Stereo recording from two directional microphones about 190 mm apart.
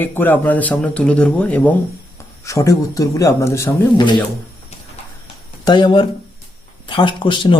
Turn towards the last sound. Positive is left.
turn(degrees=25)  # may be behind; listen again after turning